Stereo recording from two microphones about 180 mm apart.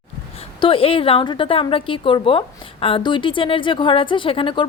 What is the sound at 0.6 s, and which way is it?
A woman's voice, 30° left (ahead or behind).